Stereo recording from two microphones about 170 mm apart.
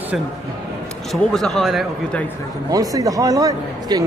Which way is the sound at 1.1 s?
Centre (ahead or behind).